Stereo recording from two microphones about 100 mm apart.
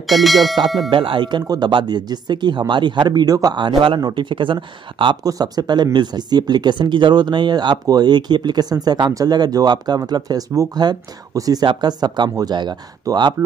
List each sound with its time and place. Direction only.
0.0 s speech: centre (ahead or behind)
0.8 s speech: 60° right (ahead or behind)
5.2 s speech: 45° right (ahead or behind)